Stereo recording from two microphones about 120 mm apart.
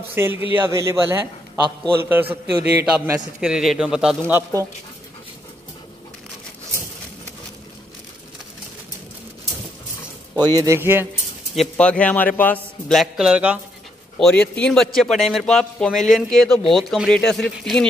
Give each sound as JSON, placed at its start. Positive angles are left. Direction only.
{"t": 0.1, "sound": "a man's voice", "side_deg": -20}
{"t": 3.3, "sound": "a man's voice", "side_deg": -5}
{"t": 4.3, "sound": "a man's voice", "side_deg": -20}
{"t": 10.3, "sound": "speech", "side_deg": -35}
{"t": 10.8, "sound": "a man's voice", "side_deg": -20}
{"t": 11.7, "sound": "speech", "side_deg": 10}
{"t": 12.8, "sound": "a man's voice", "side_deg": 0}
{"t": 14.1, "sound": "a man's voice", "side_deg": 5}